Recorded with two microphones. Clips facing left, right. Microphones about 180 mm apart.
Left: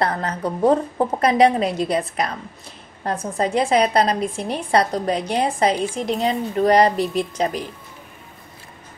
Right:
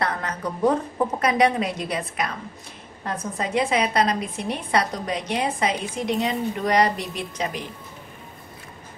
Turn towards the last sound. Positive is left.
turn(degrees=35)  # may be behind; listen again after turning